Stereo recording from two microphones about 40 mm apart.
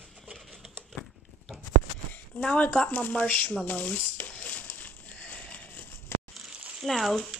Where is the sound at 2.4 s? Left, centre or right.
Left.